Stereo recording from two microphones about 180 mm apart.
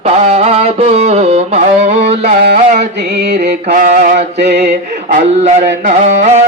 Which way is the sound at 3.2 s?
65° right (ahead or behind).